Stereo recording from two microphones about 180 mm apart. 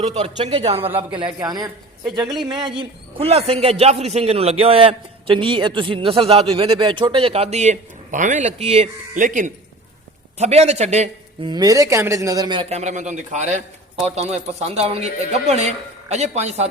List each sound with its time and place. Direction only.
0.0 s a man's voice: 40° right (ahead or behind)
11.4 s a man's voice: 20° right (ahead or behind); by 16.6 s 35° right (ahead or behind)